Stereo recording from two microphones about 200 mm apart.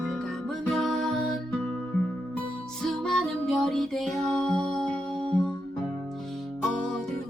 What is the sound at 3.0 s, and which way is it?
Music, centre (ahead or behind).